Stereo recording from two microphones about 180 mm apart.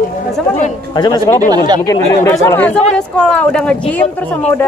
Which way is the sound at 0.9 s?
20° left (ahead or behind).